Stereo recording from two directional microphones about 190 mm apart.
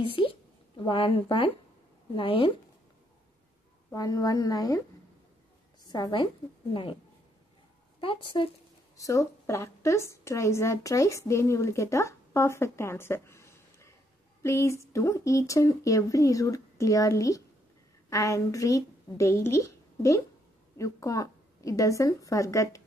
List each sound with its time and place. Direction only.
0.0 s a sound: 25° left (ahead or behind)
2.1 s speech: 25° left (ahead or behind)
3.9 s speech: 20° left (ahead or behind)
5.9 s a woman's voice: 20° left (ahead or behind)
8.0 s a woman's voice: 25° left (ahead or behind)